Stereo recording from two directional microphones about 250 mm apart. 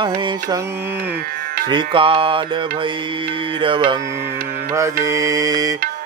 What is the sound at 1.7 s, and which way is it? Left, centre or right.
Mantra, centre.